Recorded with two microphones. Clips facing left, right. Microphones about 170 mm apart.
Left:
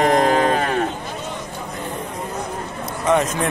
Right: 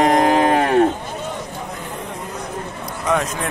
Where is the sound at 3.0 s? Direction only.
Centre (ahead or behind).